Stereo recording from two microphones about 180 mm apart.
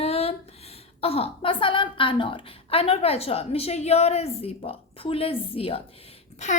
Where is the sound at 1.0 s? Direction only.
30° left (ahead or behind).